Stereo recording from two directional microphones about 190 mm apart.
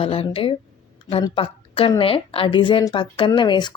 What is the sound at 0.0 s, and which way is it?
A woman's voice, 30° left (ahead or behind).